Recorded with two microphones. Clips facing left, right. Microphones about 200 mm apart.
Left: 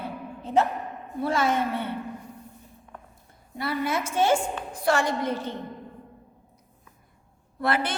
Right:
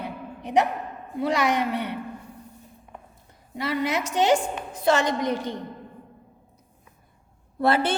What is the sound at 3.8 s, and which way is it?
A woman's voice, 20° right (ahead or behind).